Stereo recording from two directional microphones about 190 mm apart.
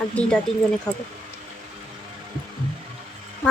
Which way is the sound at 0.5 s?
Centre (ahead or behind).